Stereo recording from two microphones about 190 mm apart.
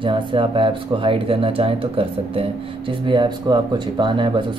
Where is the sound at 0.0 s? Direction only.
25° right (ahead or behind).